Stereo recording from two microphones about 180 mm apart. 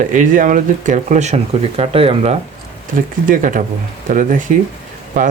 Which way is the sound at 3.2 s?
50° right (ahead or behind).